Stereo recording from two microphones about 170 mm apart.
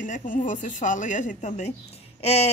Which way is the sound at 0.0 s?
50° left (ahead or behind).